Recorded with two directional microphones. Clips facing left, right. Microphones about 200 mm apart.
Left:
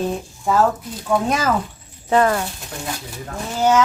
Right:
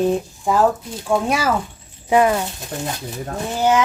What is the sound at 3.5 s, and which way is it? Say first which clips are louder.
Speech: left 1 dB; 15° right (ahead or behind).